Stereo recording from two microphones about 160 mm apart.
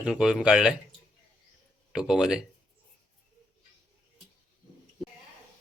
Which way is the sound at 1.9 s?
5° right (ahead or behind).